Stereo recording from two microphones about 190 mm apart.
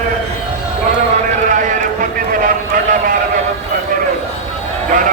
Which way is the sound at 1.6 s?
45° right (ahead or behind).